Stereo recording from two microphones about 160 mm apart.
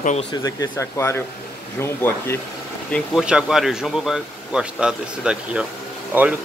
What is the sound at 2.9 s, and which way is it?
A man's voice, 5° right (ahead or behind).